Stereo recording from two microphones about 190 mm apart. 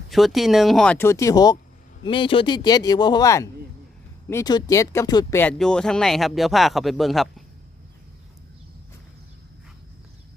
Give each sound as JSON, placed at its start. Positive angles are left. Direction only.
{"t": 0.1, "sound": "speech", "side_deg": 0}